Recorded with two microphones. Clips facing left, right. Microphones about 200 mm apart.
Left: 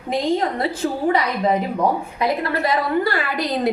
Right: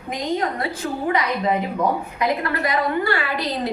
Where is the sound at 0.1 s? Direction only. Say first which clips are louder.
Left 4 dB; 30° left (ahead or behind).